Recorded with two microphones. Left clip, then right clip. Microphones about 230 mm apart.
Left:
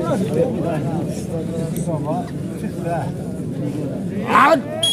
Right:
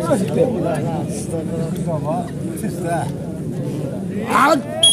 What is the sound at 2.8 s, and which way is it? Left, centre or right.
Speech, right.